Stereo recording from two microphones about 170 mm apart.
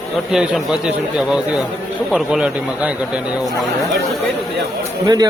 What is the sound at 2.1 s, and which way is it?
Speech, 5° right (ahead or behind).